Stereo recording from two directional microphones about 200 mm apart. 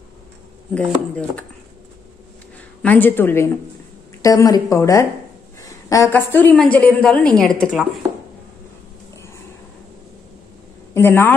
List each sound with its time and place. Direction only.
0.7 s a woman's voice: 5° left (ahead or behind)
2.8 s a woman's voice: 10° left (ahead or behind)
11.0 s speech: 10° left (ahead or behind)